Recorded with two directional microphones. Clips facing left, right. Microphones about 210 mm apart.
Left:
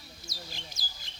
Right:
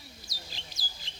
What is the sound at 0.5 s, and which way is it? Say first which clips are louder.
Bird: left 2 dB; 45° left (ahead or behind).